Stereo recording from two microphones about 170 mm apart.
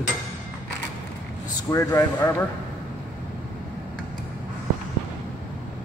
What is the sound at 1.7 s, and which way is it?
Speech, 20° left (ahead or behind).